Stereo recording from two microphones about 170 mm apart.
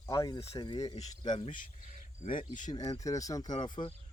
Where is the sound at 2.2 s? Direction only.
50° left (ahead or behind).